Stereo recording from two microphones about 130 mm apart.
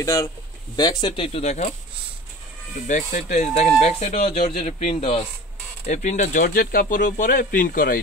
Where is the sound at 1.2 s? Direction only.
55° left (ahead or behind).